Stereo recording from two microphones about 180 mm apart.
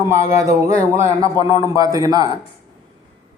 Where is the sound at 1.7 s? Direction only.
20° right (ahead or behind).